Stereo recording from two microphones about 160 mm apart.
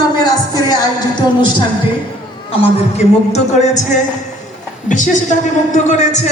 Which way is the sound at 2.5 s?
45° left (ahead or behind).